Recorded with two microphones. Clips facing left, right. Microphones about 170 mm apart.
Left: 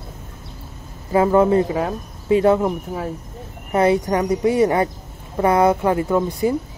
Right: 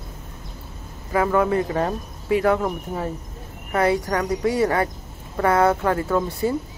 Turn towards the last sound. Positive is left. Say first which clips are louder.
# left 3 dB
turn(degrees=15)  # may be behind; listen again after turning